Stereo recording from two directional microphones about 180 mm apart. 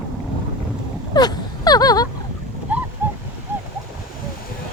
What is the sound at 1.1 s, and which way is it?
Gasp, 20° left (ahead or behind).